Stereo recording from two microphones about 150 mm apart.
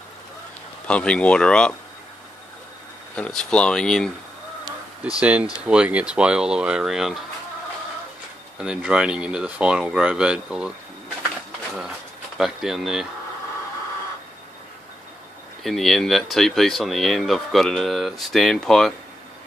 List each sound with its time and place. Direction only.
0.8 s speech: 5° left (ahead or behind)
3.2 s speech: 5° left (ahead or behind)
5.2 s speech: 10° right (ahead or behind)
8.5 s speech: 5° right (ahead or behind)
12.4 s speech: centre (ahead or behind)
15.6 s speech: centre (ahead or behind)